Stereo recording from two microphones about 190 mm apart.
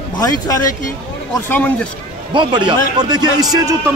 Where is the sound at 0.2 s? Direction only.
20° left (ahead or behind).